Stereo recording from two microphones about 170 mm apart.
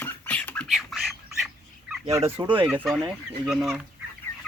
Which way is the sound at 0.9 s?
Centre (ahead or behind).